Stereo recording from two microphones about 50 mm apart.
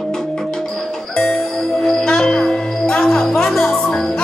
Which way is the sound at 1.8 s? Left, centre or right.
Centre.